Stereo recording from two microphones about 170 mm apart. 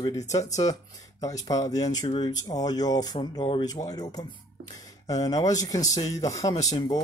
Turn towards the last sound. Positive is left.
turn(degrees=20)  # may be behind; listen again after turning